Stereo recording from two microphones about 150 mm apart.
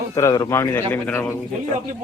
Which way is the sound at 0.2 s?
25° left (ahead or behind).